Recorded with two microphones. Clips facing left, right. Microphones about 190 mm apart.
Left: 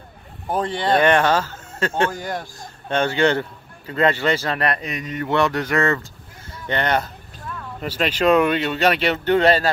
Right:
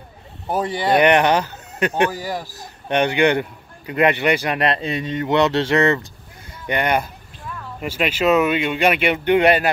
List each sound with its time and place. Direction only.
0.5 s speech: 10° right (ahead or behind)
2.1 s speech: 5° right (ahead or behind)
2.9 s speech: 15° right (ahead or behind)
6.7 s speech: 10° right (ahead or behind)